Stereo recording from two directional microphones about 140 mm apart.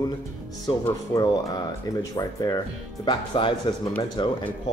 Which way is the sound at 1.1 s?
25° left (ahead or behind).